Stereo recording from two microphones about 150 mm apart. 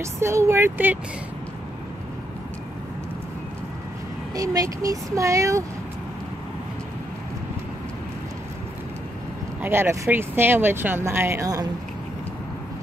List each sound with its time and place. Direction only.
0.0 s speech: 20° right (ahead or behind)
4.4 s speech: 25° right (ahead or behind)
9.6 s speech: 15° right (ahead or behind)